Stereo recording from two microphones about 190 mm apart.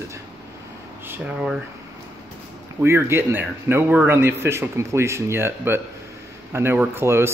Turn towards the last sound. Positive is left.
turn(degrees=-15)  # may be behind; listen again after turning